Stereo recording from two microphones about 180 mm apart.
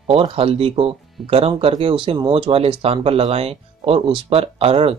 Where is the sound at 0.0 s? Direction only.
30° right (ahead or behind).